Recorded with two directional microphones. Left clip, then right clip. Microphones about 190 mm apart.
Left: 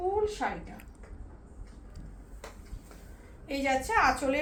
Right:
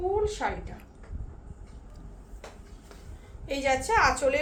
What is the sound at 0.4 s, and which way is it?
Speech, 25° right (ahead or behind).